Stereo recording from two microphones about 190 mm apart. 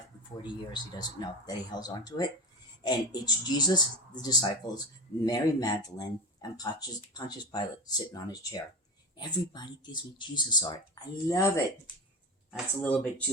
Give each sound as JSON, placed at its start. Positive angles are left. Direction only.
{"t": 0.4, "sound": "speech", "side_deg": 25}
{"t": 12.8, "sound": "speech", "side_deg": 5}